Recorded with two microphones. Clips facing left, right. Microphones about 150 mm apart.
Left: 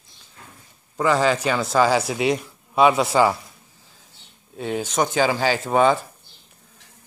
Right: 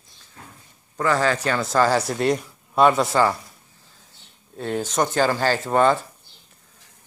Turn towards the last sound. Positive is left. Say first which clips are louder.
# even
turn(degrees=5)  # may be behind; listen again after turning